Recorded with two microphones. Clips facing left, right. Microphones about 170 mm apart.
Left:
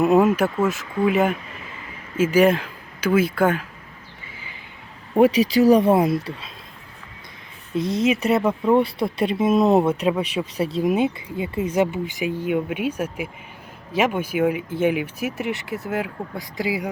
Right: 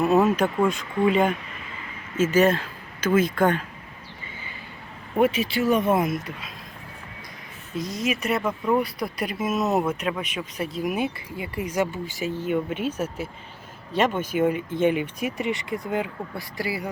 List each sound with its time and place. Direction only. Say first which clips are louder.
0.0 s speech: left 3 dB; 15° left (ahead or behind)
5.1 s speech: left 6 dB; 35° left (ahead or behind)
7.8 s speech: left 7 dB; 30° left (ahead or behind); by 16.0 s 5° left (ahead or behind)
16.3 s speech: left 4 dB; 20° left (ahead or behind)